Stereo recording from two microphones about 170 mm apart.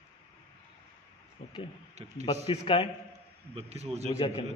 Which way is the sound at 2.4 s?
30° left (ahead or behind).